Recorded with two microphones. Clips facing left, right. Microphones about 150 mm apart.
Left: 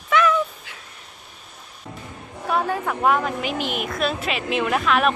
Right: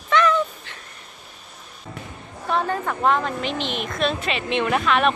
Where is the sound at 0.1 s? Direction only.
5° left (ahead or behind).